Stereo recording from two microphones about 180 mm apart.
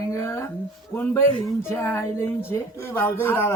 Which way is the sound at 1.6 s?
15° left (ahead or behind).